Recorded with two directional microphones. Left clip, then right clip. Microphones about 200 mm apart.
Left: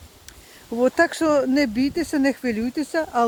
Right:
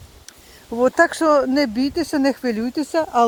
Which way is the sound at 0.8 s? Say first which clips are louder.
Right 3 dB; 25° left (ahead or behind).